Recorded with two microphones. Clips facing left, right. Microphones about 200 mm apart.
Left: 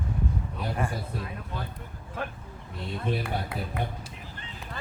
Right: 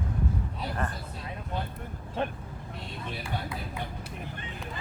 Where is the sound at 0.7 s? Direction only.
10° left (ahead or behind).